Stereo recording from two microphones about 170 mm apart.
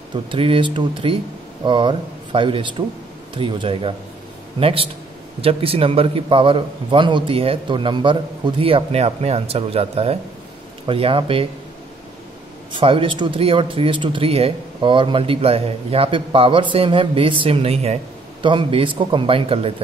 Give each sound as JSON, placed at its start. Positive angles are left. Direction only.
{"t": 0.1, "sound": "speech", "side_deg": -30}
{"t": 12.7, "sound": "speech", "side_deg": -30}